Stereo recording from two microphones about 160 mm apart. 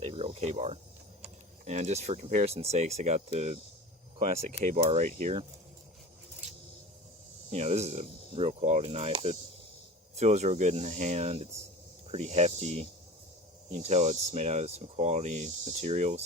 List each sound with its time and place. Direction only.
0.0 s cricket: 40° right (ahead or behind)
1.2 s speech: 45° right (ahead or behind)
7.5 s speech: 40° right (ahead or behind)